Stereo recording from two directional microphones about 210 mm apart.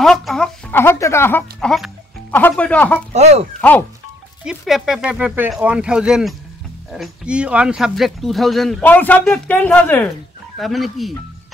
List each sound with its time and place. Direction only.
0.0 s speech: centre (ahead or behind)
3.1 s speech: 30° right (ahead or behind)
4.5 s speech: centre (ahead or behind)